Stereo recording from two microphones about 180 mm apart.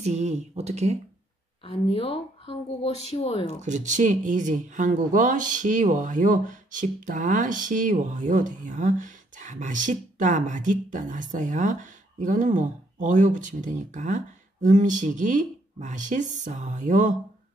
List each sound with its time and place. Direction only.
0.0 s speech: 40° right (ahead or behind)
1.6 s speech: 30° left (ahead or behind)
3.4 s speech: 40° right (ahead or behind)